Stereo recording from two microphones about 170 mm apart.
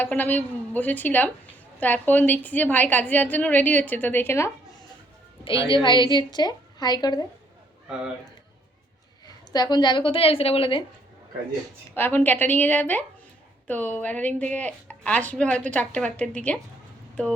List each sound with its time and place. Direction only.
0.0 s a woman's voice: 10° left (ahead or behind)
5.6 s a woman's voice: 30° left (ahead or behind)
9.2 s a woman's voice: 25° left (ahead or behind)
11.9 s a woman's voice: 10° left (ahead or behind)